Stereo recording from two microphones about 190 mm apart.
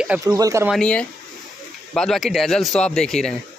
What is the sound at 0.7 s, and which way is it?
Speech, 5° left (ahead or behind).